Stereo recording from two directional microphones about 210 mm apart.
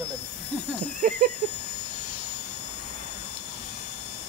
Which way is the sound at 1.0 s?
40° right (ahead or behind).